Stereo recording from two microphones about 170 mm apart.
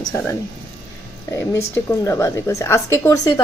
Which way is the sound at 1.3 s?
15° left (ahead or behind).